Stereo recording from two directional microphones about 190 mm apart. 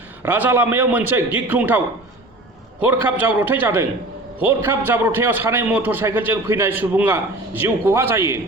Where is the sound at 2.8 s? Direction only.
10° right (ahead or behind).